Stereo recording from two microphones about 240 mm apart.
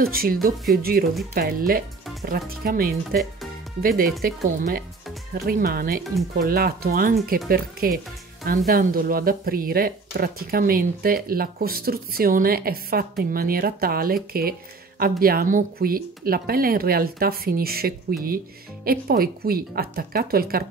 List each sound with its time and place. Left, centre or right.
0.0 s speech: right